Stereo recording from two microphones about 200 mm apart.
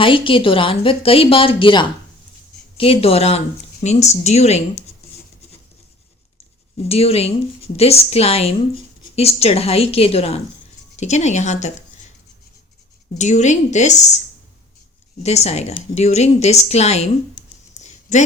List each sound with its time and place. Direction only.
0.0 s a woman's voice: 25° left (ahead or behind)
6.8 s a woman's voice: 30° left (ahead or behind)
13.1 s a woman's voice: 35° left (ahead or behind)
15.2 s a woman's voice: 35° left (ahead or behind)